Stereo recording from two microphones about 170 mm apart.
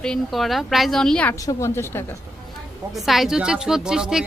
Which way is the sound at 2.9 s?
Centre (ahead or behind).